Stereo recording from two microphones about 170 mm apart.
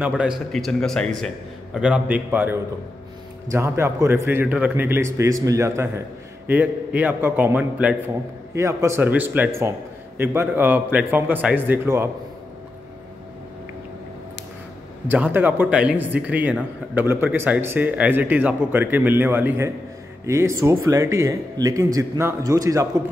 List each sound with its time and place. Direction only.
0.2 s a man's voice: centre (ahead or behind)
15.0 s a man's voice: 10° right (ahead or behind)